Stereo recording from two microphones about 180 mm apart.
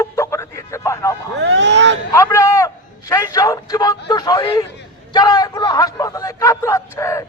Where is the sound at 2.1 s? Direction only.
15° left (ahead or behind).